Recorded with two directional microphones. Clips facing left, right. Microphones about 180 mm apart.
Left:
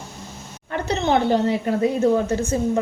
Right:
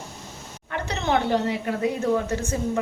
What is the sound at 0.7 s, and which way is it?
Speech, 30° left (ahead or behind).